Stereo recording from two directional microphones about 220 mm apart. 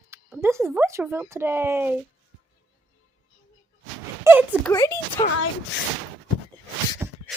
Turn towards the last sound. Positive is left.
turn(degrees=-15)  # may be behind; listen again after turning